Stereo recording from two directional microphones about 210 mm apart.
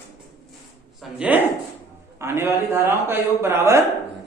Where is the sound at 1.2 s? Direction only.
10° right (ahead or behind).